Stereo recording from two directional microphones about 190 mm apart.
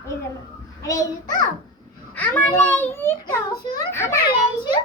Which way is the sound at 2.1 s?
10° left (ahead or behind).